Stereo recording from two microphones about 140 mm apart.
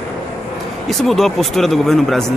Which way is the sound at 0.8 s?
Centre (ahead or behind).